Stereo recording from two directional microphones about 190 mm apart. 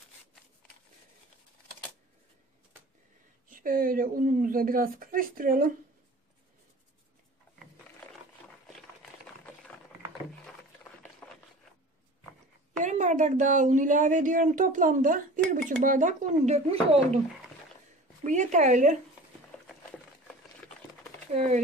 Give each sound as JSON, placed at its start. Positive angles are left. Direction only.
{"t": 3.4, "sound": "a woman's voice", "side_deg": -45}
{"t": 10.4, "sound": "a sound", "side_deg": 10}
{"t": 12.7, "sound": "a woman's voice", "side_deg": -40}
{"t": 18.2, "sound": "speech", "side_deg": -40}